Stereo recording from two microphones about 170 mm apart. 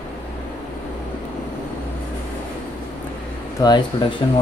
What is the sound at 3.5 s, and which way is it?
Speech, 25° left (ahead or behind).